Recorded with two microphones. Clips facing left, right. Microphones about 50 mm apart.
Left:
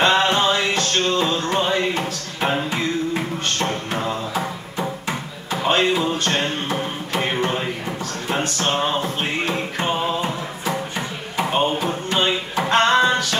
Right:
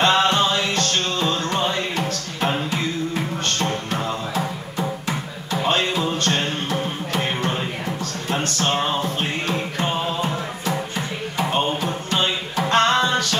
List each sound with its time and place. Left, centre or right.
0.0 s music: centre